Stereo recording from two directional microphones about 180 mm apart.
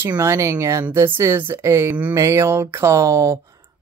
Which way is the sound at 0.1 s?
15° right (ahead or behind).